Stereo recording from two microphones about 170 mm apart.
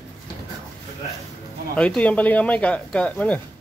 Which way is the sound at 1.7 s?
5° left (ahead or behind).